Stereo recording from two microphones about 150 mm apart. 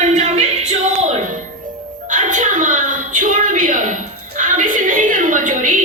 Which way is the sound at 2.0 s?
60° right (ahead or behind).